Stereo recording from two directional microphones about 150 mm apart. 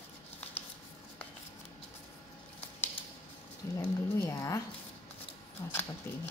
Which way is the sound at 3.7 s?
20° left (ahead or behind).